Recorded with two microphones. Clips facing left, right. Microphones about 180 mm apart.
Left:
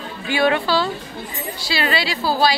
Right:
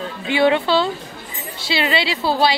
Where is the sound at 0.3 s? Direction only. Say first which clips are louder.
Right 2 dB; 25° right (ahead or behind).